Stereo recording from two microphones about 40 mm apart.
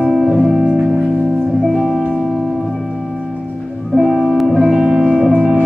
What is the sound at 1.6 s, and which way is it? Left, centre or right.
Music, centre.